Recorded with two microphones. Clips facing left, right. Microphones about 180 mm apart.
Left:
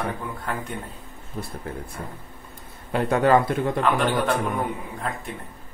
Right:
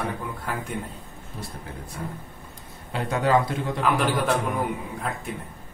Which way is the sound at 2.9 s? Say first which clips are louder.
Left 4 dB; 55° left (ahead or behind).